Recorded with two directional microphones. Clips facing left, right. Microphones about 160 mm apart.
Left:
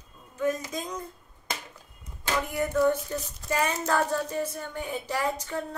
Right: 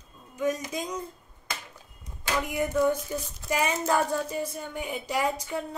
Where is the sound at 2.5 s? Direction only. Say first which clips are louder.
Left 1 dB; 15° right (ahead or behind).